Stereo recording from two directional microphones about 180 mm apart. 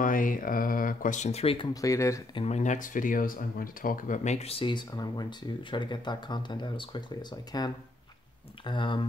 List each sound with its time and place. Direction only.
0.0 s speech: 50° left (ahead or behind); by 2.2 s 15° left (ahead or behind)
2.3 s speech: 35° left (ahead or behind)